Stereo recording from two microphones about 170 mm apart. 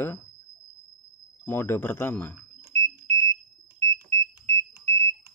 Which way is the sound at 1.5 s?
10° left (ahead or behind).